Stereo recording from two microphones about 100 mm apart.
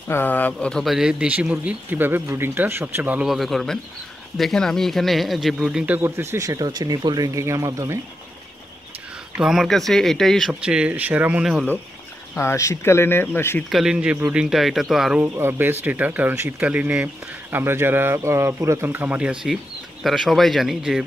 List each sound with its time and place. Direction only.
0.1 s speech: 20° left (ahead or behind)
0.8 s speech: 5° right (ahead or behind)
3.3 s speech: centre (ahead or behind)
5.9 s speech: 25° right (ahead or behind)
9.4 s speech: 5° right (ahead or behind)
10.5 s speech: 10° right (ahead or behind)
12.4 s speech: 30° left (ahead or behind)
13.7 s speech: 5° right (ahead or behind)
15.2 s speech: 25° right (ahead or behind)
19.4 s speech: centre (ahead or behind)